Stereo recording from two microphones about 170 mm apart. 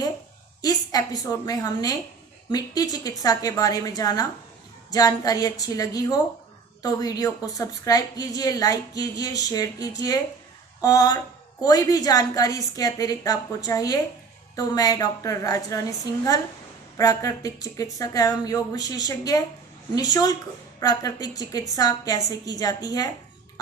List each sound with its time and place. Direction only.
0.6 s a woman's voice: 20° left (ahead or behind)